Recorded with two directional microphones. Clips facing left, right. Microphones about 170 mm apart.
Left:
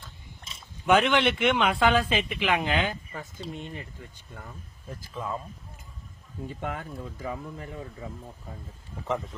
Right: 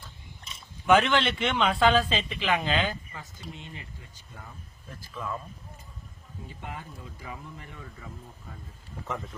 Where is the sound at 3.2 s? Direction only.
50° left (ahead or behind).